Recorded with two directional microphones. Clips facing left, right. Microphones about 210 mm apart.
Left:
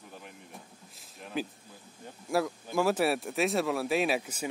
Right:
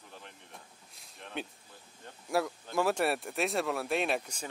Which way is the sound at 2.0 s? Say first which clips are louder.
Left 2 dB; centre (ahead or behind).